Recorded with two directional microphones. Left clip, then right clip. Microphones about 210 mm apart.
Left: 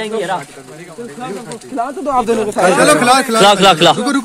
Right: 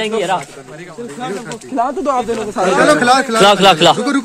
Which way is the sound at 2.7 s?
30° left (ahead or behind).